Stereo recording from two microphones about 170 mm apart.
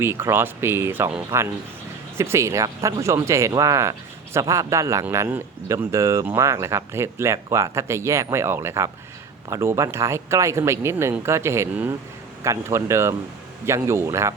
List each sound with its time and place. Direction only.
0.0 s speech: 15° right (ahead or behind)